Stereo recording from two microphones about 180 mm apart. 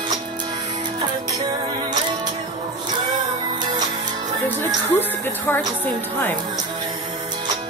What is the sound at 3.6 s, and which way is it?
Music, 25° right (ahead or behind).